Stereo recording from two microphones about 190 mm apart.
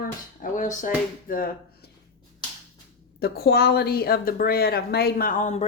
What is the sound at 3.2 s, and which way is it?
Speech, 55° left (ahead or behind).